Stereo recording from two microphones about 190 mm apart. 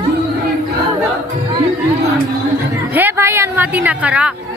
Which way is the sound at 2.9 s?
10° right (ahead or behind).